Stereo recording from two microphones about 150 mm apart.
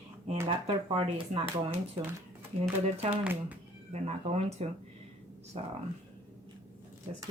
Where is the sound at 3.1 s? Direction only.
10° right (ahead or behind).